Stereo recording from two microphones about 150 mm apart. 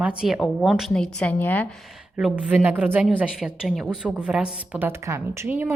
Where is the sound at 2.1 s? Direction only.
10° right (ahead or behind).